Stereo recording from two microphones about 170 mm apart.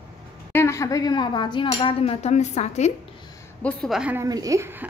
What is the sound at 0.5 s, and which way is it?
Speech, 15° left (ahead or behind).